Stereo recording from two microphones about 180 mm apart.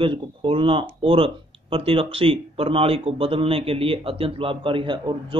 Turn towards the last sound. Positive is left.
turn(degrees=-25)  # may be behind; listen again after turning